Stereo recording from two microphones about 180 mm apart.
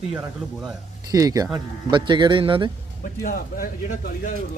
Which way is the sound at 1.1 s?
20° right (ahead or behind).